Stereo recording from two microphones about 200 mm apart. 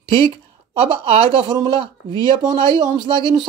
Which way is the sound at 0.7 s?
30° right (ahead or behind).